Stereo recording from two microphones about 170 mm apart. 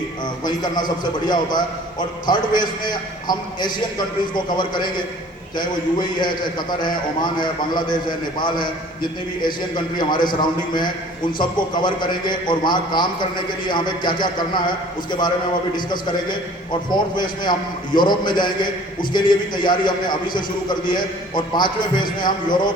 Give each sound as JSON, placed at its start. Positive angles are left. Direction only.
{"t": 1.3, "sound": "a man's voice", "side_deg": 25}
{"t": 11.3, "sound": "a man's voice", "side_deg": 25}
{"t": 16.9, "sound": "a man's voice", "side_deg": 25}